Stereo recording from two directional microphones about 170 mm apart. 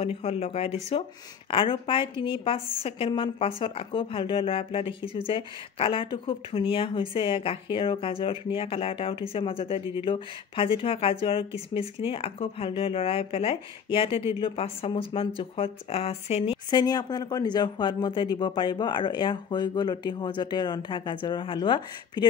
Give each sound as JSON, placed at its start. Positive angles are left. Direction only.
{"t": 0.0, "sound": "a woman's voice", "side_deg": 35}